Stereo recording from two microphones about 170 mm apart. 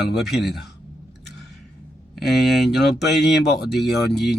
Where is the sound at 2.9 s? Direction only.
80° left.